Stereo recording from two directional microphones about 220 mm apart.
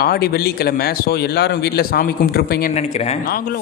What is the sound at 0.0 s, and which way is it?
A man's voice, 45° left (ahead or behind).